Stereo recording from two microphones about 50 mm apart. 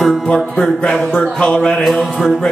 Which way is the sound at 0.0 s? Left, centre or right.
Centre.